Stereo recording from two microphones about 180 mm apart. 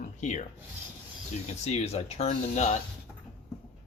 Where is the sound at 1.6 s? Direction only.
35° left (ahead or behind).